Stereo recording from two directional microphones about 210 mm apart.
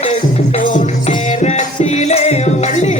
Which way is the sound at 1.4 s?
30° left (ahead or behind).